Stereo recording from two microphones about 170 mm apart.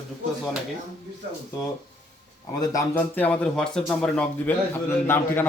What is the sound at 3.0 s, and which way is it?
A man's voice, 10° left (ahead or behind).